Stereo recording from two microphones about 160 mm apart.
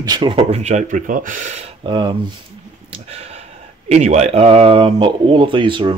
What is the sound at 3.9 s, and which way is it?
Speech, 45° right (ahead or behind).